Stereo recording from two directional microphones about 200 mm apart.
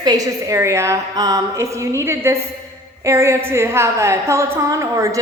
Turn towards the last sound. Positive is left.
turn(degrees=-15)  # may be behind; listen again after turning